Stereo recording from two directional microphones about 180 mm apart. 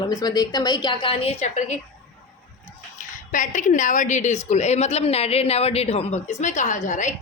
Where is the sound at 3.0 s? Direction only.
45° left (ahead or behind).